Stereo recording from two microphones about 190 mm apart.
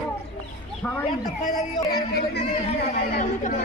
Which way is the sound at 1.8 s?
55° left (ahead or behind).